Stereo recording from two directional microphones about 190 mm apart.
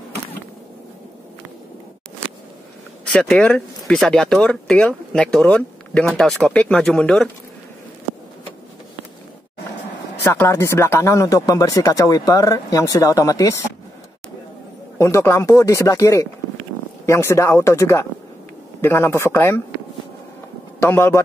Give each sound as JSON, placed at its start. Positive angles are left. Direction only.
{"t": 3.1, "sound": "speech", "side_deg": 5}
{"t": 10.2, "sound": "speech", "side_deg": 10}
{"t": 15.0, "sound": "speech", "side_deg": 15}
{"t": 20.8, "sound": "speech", "side_deg": 10}